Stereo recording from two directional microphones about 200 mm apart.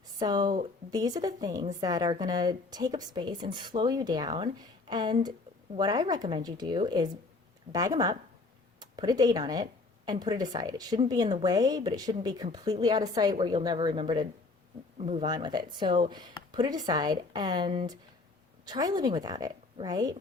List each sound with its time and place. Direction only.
0.2 s speech: 20° right (ahead or behind)